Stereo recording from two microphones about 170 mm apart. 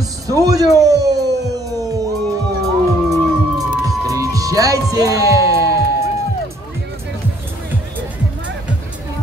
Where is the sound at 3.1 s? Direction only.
20° right (ahead or behind).